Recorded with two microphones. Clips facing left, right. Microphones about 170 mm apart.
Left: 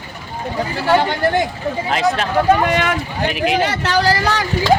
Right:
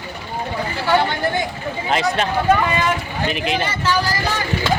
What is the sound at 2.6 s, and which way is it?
Speech, 75° left (ahead or behind).